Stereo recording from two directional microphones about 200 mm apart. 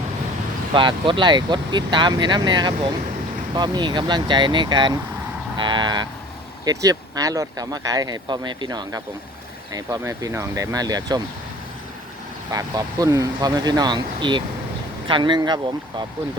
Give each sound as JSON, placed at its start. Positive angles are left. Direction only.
{"t": 0.7, "sound": "speech", "side_deg": -25}
{"t": 12.5, "sound": "speech", "side_deg": -15}